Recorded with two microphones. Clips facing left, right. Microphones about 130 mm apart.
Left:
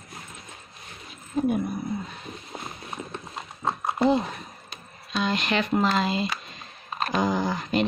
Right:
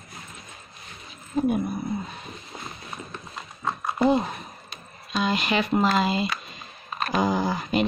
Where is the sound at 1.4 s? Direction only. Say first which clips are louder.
Right 1 dB; 10° right (ahead or behind).